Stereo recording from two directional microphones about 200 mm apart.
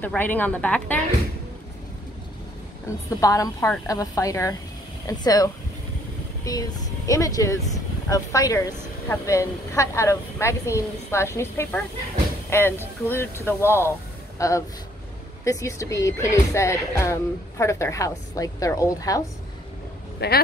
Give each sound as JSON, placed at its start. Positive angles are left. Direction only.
{"t": 0.0, "sound": "speech", "side_deg": 10}
{"t": 3.1, "sound": "speech", "side_deg": 15}
{"t": 20.2, "sound": "speech", "side_deg": 55}